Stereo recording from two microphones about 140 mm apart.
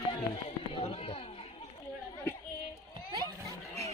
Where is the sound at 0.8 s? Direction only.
45° left (ahead or behind).